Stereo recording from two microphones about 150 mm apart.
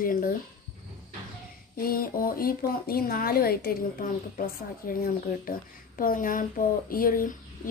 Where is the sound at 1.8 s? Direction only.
75° left (ahead or behind).